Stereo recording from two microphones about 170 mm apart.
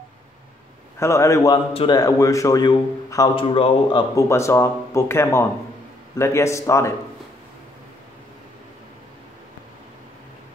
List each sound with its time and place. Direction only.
0.9 s speech: 15° left (ahead or behind)
1.7 s a man's voice: 35° left (ahead or behind)
2.0 s a man's voice: 20° left (ahead or behind)
3.3 s a man's voice: 30° left (ahead or behind)
4.1 s speech: 15° left (ahead or behind)